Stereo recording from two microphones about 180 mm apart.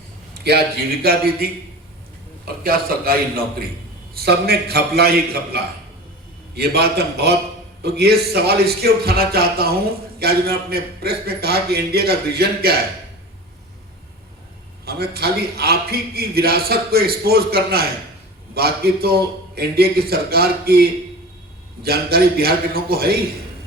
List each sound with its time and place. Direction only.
0.5 s a man's voice: 60° right (ahead or behind)
6.6 s a man's voice: 60° right (ahead or behind)
14.8 s a man's voice: 60° right (ahead or behind)
21.8 s a man's voice: 60° right (ahead or behind)